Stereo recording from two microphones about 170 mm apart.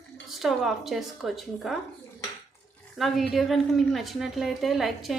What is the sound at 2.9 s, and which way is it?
A woman's voice, centre (ahead or behind).